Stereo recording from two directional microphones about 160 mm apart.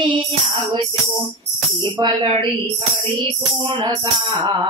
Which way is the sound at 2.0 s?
35° right (ahead or behind).